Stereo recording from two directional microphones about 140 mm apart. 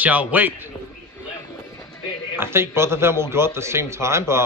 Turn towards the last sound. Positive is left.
turn(degrees=-20)  # may be behind; listen again after turning